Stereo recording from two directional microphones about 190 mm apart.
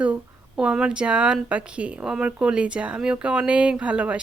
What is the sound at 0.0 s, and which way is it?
Speech, 5° right (ahead or behind).